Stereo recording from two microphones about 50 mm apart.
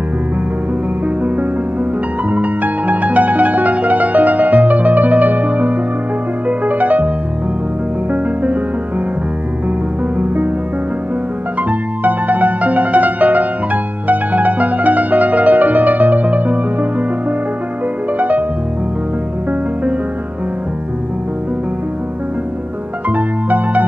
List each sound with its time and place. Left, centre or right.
2.3 s music: right
10.1 s music: right
12.0 s music: right
18.1 s music: right
23.0 s music: right